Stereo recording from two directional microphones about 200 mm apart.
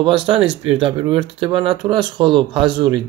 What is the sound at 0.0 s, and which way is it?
Speech, 25° right (ahead or behind).